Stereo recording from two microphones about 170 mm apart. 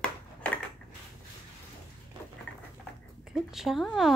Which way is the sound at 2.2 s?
30° right (ahead or behind).